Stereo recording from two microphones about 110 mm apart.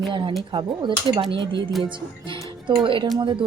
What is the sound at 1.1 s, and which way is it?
Speech, 45° right (ahead or behind).